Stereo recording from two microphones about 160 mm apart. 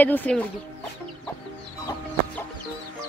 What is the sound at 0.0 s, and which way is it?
Speech, 10° left (ahead or behind).